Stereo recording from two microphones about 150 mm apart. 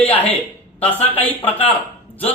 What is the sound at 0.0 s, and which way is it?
Speech, 10° left (ahead or behind).